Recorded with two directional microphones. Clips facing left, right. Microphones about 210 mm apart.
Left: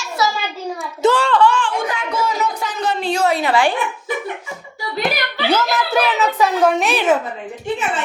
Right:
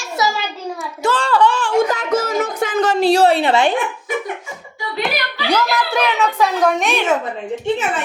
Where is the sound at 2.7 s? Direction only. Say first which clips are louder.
Right 5 dB; 90° right.